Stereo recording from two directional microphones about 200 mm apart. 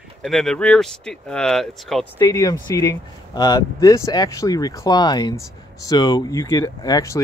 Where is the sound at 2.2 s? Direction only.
15° left (ahead or behind).